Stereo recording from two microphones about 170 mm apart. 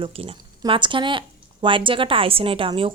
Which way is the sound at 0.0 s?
35° right (ahead or behind).